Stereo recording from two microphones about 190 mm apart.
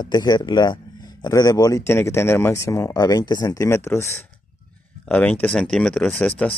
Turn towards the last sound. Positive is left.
turn(degrees=5)  # may be behind; listen again after turning